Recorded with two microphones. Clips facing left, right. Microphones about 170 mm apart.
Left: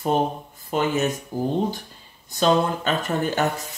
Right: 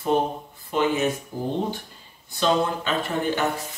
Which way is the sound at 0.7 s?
45° left (ahead or behind).